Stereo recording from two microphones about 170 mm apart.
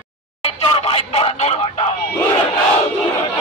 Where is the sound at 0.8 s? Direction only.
35° left (ahead or behind).